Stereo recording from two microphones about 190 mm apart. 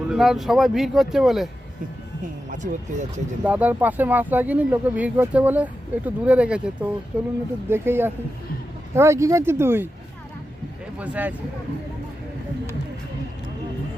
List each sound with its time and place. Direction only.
0.1 s speech: centre (ahead or behind)
2.2 s speech: 40° right (ahead or behind)
3.4 s speech: 10° right (ahead or behind)
10.9 s speech: 5° right (ahead or behind)